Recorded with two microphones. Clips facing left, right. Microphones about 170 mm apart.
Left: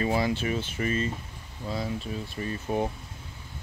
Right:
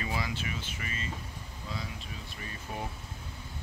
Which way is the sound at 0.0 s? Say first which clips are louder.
Left 9 dB; 35° left (ahead or behind).